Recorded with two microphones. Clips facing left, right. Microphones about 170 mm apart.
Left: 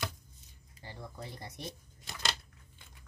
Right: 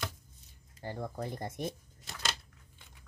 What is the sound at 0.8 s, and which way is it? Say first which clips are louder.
Speech: right 8 dB; 50° right (ahead or behind).